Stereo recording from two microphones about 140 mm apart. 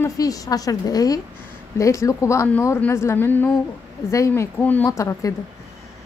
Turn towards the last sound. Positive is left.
turn(degrees=20)  # may be behind; listen again after turning